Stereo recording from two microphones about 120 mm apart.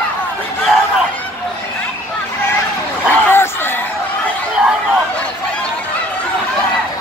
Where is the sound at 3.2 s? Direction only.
20° left (ahead or behind).